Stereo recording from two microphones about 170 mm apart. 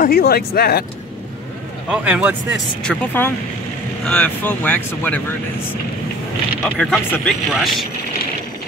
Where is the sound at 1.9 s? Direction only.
5° right (ahead or behind).